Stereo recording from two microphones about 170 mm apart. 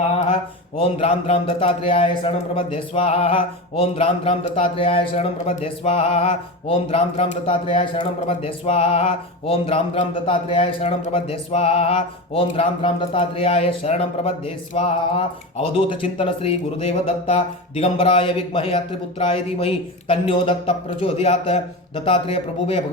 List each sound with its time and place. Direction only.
0.9 s a man's voice: 35° left (ahead or behind)